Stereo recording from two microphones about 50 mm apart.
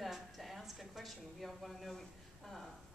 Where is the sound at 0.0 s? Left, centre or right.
Centre.